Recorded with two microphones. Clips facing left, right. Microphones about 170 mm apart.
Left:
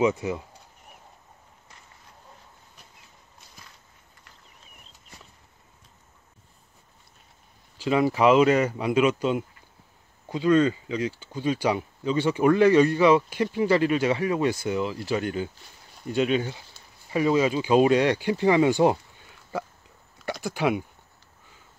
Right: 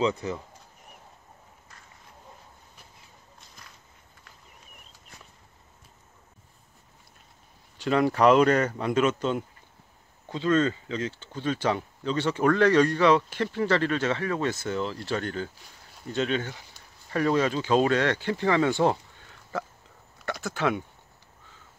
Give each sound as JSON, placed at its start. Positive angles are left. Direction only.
{"t": 0.0, "sound": "speech", "side_deg": 15}
{"t": 7.7, "sound": "speech", "side_deg": 5}
{"t": 20.2, "sound": "speech", "side_deg": 15}